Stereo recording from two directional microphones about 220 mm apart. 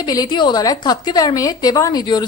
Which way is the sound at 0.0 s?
20° left (ahead or behind).